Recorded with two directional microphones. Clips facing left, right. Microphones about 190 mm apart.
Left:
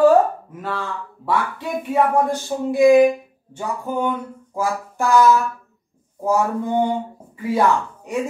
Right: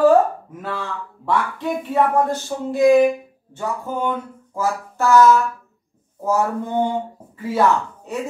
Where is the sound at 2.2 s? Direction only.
10° left (ahead or behind).